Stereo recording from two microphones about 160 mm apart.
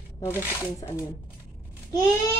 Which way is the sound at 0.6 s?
20° left (ahead or behind).